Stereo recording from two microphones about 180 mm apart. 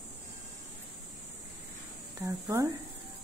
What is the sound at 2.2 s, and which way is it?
Speech, 15° right (ahead or behind).